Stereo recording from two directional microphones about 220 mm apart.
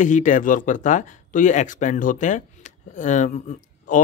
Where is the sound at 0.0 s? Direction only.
35° left (ahead or behind).